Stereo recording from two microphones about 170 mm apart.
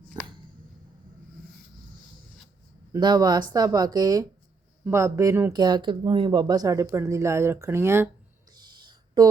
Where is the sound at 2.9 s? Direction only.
25° right (ahead or behind).